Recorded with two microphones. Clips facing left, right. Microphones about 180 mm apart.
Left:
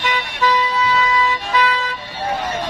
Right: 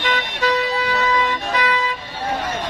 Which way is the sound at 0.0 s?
55° right (ahead or behind).